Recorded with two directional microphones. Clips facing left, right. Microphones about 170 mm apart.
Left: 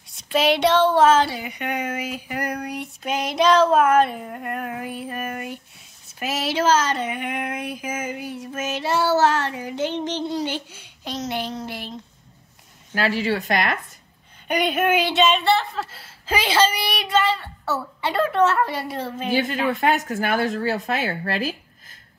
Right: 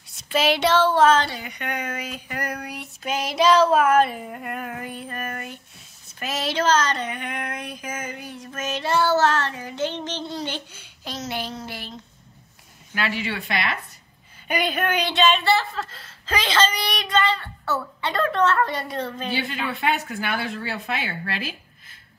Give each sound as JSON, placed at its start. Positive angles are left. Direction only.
{"t": 0.1, "sound": "speech", "side_deg": 0}
{"t": 6.0, "sound": "female singing", "side_deg": 5}
{"t": 12.9, "sound": "a woman's voice", "side_deg": 35}
{"t": 14.5, "sound": "speech", "side_deg": 0}
{"t": 19.3, "sound": "speech", "side_deg": 45}